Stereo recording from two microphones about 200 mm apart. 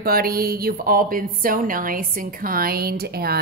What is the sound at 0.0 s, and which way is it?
Speech, 50° right (ahead or behind).